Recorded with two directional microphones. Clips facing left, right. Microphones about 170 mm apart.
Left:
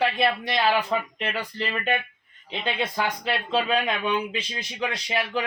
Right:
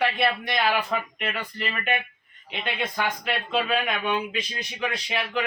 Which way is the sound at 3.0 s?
35° left (ahead or behind).